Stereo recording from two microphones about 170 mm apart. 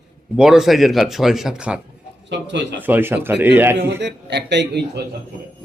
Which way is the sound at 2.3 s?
90° right.